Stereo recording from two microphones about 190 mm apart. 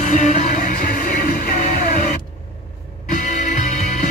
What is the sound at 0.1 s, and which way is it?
Music, 35° left (ahead or behind).